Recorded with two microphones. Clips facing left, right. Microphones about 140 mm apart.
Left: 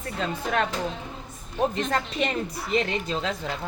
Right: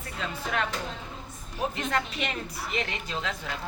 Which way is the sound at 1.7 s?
35° left (ahead or behind).